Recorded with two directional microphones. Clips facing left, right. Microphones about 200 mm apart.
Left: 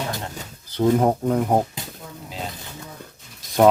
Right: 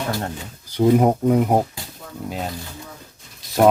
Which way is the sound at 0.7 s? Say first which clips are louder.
Right 3 dB; 15° right (ahead or behind).